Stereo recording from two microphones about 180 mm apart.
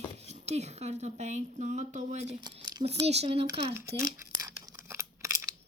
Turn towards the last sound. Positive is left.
turn(degrees=-15)  # may be behind; listen again after turning